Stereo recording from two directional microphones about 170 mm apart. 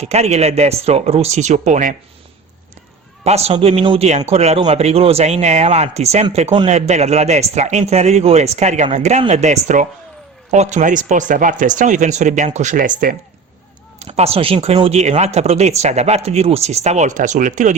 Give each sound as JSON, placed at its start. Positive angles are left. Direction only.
{"t": 0.0, "sound": "speech", "side_deg": -40}
{"t": 3.2, "sound": "speech", "side_deg": -40}
{"t": 14.0, "sound": "speech", "side_deg": -40}